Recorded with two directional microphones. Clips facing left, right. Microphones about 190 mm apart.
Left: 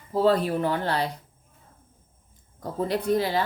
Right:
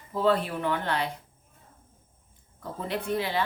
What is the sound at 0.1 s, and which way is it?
Speech, 35° left (ahead or behind).